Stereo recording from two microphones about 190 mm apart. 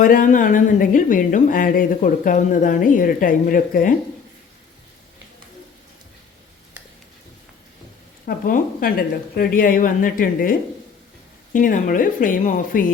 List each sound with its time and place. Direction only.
0.0 s speech: 45° left (ahead or behind)
8.4 s speech: 45° left (ahead or behind)
11.5 s speech: 45° left (ahead or behind)